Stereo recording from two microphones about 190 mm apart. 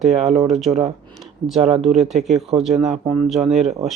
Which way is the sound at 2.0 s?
Centre (ahead or behind).